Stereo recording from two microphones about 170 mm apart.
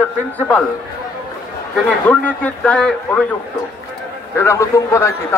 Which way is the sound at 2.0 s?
10° left (ahead or behind).